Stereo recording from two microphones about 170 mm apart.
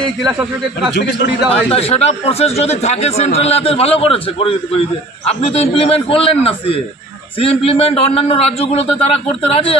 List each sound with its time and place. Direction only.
0.2 s speech: 5° right (ahead or behind)
1.5 s speech: 35° left (ahead or behind)